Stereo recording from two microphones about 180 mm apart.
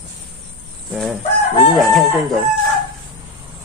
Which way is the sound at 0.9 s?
Centre (ahead or behind).